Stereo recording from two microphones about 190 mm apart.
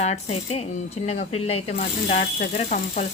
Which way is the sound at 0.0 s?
35° left (ahead or behind).